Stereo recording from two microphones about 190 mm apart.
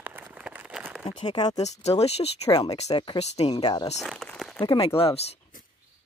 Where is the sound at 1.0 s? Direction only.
25° left (ahead or behind).